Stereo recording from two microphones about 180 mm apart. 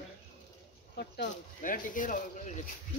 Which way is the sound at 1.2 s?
50° left (ahead or behind).